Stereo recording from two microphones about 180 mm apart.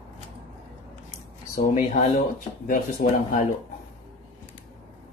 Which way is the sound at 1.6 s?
55° left (ahead or behind).